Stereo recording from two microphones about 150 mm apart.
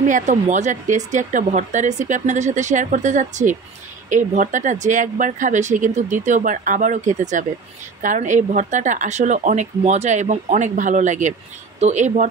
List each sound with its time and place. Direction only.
0.0 s speech: 55° right (ahead or behind)